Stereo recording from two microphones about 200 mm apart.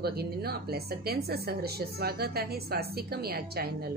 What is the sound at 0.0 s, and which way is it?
A woman's voice, 50° right (ahead or behind).